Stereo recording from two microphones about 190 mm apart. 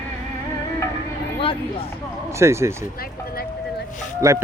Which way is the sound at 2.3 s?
15° right (ahead or behind).